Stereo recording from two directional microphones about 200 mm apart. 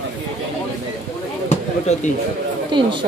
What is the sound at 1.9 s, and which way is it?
Speech, 35° left (ahead or behind).